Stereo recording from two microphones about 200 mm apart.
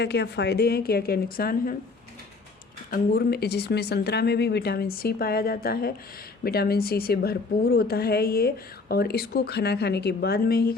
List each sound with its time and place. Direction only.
0.0 s a woman's voice: 55° left (ahead or behind)
2.9 s a woman's voice: 50° left (ahead or behind)